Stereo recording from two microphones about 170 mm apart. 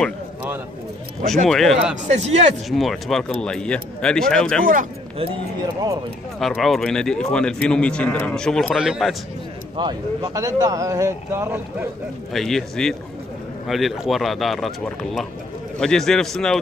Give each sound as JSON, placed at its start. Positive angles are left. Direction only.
{"t": 1.2, "sound": "a man's voice", "side_deg": 0}
{"t": 2.0, "sound": "speech", "side_deg": -40}
{"t": 2.7, "sound": "a man's voice", "side_deg": 0}
{"t": 5.1, "sound": "a man's voice", "side_deg": -35}
{"t": 6.4, "sound": "a man's voice", "side_deg": 0}
{"t": 9.8, "sound": "speech", "side_deg": -25}
{"t": 12.3, "sound": "a man's voice", "side_deg": 0}